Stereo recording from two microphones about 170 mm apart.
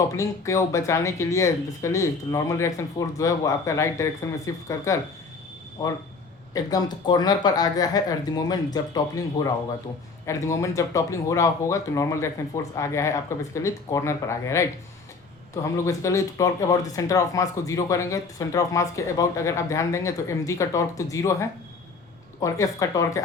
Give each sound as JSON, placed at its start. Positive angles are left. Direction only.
{"t": 0.2, "sound": "speech", "side_deg": 20}